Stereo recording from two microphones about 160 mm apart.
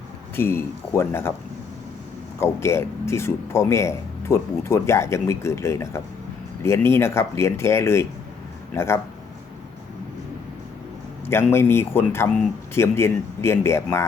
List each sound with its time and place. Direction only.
0.3 s a man's voice: 15° left (ahead or behind)
2.4 s a man's voice: 15° left (ahead or behind)
11.3 s a man's voice: 15° left (ahead or behind)